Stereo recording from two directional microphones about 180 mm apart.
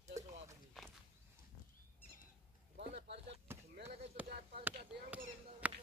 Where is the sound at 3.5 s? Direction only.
15° right (ahead or behind).